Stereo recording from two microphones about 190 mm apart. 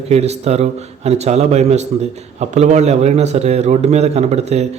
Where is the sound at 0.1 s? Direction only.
35° right (ahead or behind).